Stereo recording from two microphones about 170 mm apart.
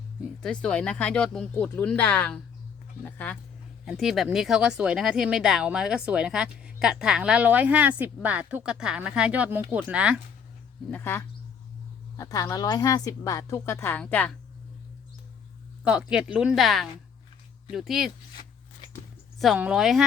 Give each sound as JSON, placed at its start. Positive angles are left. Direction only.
{"t": 0.4, "sound": "speech", "side_deg": 5}
{"t": 10.9, "sound": "a woman's voice", "side_deg": 15}
{"t": 15.8, "sound": "speech", "side_deg": -5}
{"t": 19.4, "sound": "speech", "side_deg": -5}